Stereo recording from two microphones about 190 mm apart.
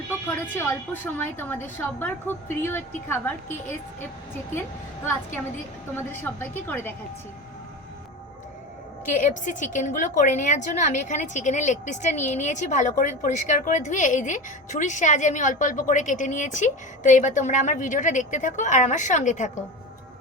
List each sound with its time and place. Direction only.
0.5 s a woman's voice: 10° left (ahead or behind)
6.0 s a woman's voice: 10° left (ahead or behind)
9.0 s a woman's voice: 40° left (ahead or behind)